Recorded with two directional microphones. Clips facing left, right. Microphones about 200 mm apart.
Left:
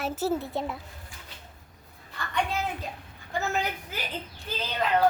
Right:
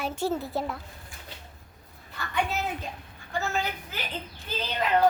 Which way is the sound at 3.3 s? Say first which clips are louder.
Left 1 dB; 15° left (ahead or behind).